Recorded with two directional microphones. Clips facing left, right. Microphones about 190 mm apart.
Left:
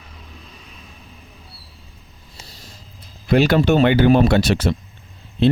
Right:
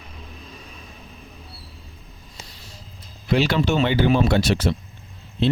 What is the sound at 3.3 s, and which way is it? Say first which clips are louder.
Speech: left 5 dB; 50° left (ahead or behind).